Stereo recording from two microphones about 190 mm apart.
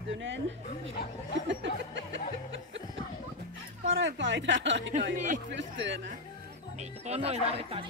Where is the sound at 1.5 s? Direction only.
75° right (ahead or behind).